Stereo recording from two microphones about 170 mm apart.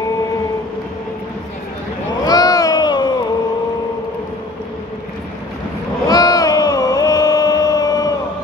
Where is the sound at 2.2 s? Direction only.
20° left (ahead or behind).